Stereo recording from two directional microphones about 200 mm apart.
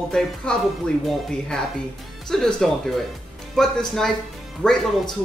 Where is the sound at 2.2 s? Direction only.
Centre (ahead or behind).